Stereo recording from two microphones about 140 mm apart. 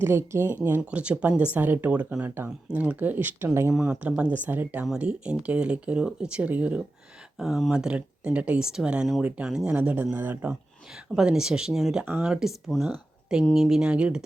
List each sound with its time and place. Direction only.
0.0 s speech: 15° right (ahead or behind)
3.8 s speech: 5° right (ahead or behind)